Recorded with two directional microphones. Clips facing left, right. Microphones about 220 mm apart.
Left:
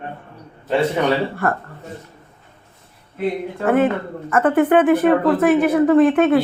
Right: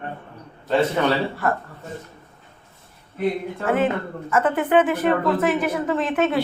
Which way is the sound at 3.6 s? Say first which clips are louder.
Left 5 dB; 55° left (ahead or behind).